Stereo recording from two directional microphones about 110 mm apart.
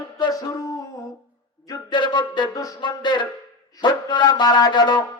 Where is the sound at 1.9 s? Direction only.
45° left (ahead or behind).